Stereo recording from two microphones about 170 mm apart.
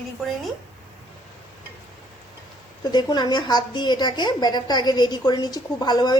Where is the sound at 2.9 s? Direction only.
25° left (ahead or behind).